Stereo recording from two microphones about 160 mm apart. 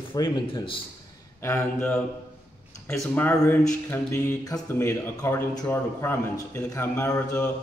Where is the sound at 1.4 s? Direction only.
10° left (ahead or behind).